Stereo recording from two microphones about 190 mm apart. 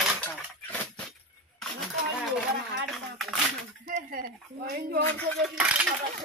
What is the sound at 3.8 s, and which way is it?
Speech, 45° right (ahead or behind).